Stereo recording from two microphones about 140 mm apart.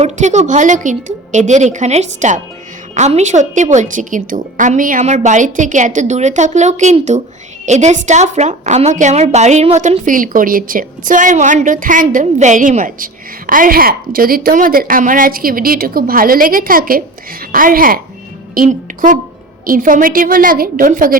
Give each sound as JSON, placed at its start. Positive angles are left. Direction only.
{"t": 0.0, "sound": "a woman's voice", "side_deg": -55}
{"t": 13.5, "sound": "a woman's voice", "side_deg": -85}
{"t": 18.5, "sound": "a woman's voice", "side_deg": -80}
{"t": 19.6, "sound": "a woman's voice", "side_deg": -80}